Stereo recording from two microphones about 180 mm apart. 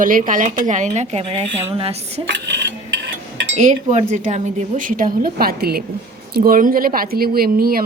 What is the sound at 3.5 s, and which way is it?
A woman's voice, 40° right (ahead or behind).